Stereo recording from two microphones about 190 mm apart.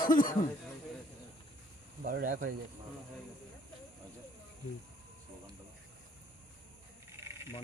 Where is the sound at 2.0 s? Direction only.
50° right (ahead or behind).